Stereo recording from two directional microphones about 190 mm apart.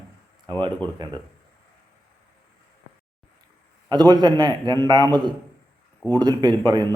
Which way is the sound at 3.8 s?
20° right (ahead or behind).